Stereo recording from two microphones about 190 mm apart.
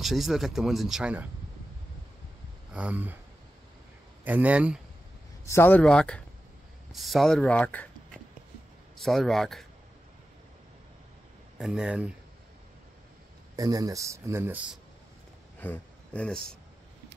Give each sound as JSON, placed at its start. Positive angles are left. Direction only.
{"t": 0.0, "sound": "speech", "side_deg": 0}
{"t": 2.7, "sound": "speech", "side_deg": -5}
{"t": 4.2, "sound": "speech", "side_deg": -10}
{"t": 5.4, "sound": "speech", "side_deg": 10}
{"t": 11.5, "sound": "speech", "side_deg": -5}
{"t": 13.6, "sound": "speech", "side_deg": -20}
{"t": 15.6, "sound": "speech", "side_deg": 10}